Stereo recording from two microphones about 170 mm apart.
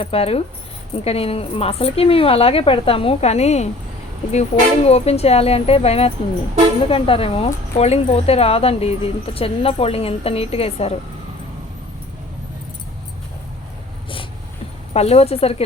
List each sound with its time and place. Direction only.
0.0 s speech: 35° left (ahead or behind)
14.9 s speech: 35° left (ahead or behind)